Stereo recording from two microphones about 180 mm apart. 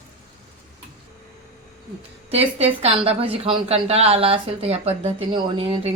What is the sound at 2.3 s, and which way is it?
A woman's voice, 35° right (ahead or behind).